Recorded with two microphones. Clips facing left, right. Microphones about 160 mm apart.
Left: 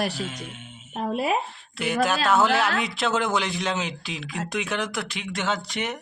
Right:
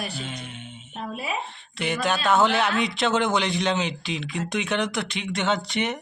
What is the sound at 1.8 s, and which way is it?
Speech, 5° left (ahead or behind).